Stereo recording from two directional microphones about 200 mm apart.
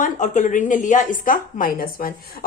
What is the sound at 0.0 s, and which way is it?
A woman's voice, 40° left (ahead or behind).